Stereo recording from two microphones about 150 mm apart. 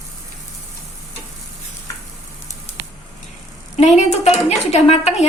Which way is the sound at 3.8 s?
50° left (ahead or behind).